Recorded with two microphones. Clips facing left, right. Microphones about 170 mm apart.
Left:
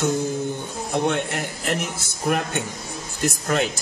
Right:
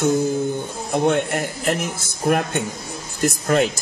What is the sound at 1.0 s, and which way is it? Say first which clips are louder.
Speech: right 8 dB; 50° right (ahead or behind).